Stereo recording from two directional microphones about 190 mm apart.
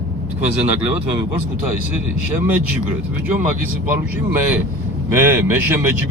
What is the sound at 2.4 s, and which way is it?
Speech, 10° right (ahead or behind).